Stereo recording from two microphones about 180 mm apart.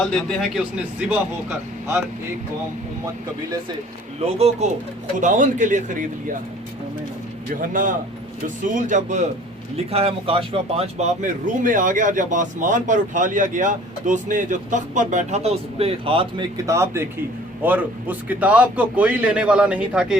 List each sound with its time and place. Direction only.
0.0 s speech: 5° left (ahead or behind)
4.2 s speech: 35° right (ahead or behind)
7.5 s speech: 50° right (ahead or behind); by 16.2 s 30° right (ahead or behind)
16.6 s a man's voice: 15° right (ahead or behind)